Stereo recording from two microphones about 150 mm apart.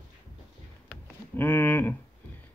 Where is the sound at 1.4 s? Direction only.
15° left (ahead or behind).